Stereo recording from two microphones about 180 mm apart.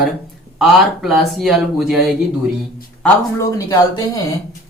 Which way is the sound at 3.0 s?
15° left (ahead or behind).